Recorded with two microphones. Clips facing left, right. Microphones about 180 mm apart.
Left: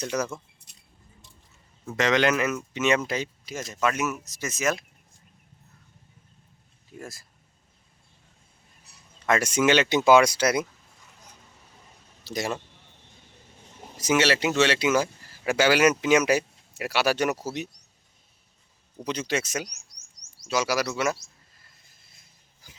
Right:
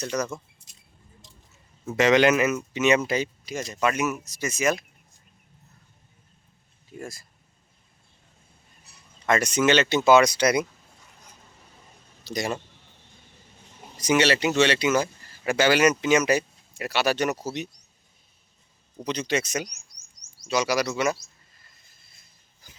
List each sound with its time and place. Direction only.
0.0 s speech: 10° left (ahead or behind)
0.7 s keys jangling: 60° left (ahead or behind)
1.9 s speech: 10° right (ahead or behind)
7.0 s speech: centre (ahead or behind)
9.2 s speech: 5° left (ahead or behind)
12.2 s speech: 5° left (ahead or behind)
14.0 s speech: 5° left (ahead or behind)
19.0 s speech: 5° left (ahead or behind)